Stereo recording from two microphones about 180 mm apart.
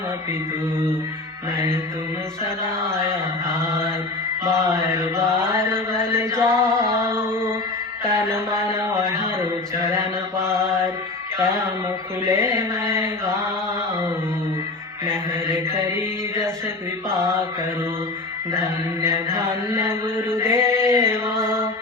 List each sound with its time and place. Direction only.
2.8 s mantra: 15° right (ahead or behind)
6.0 s music: 15° right (ahead or behind)
8.0 s mantra: 15° right (ahead or behind)
12.3 s mantra: 15° right (ahead or behind)
15.0 s mantra: 15° right (ahead or behind)
18.5 s mantra: 15° right (ahead or behind)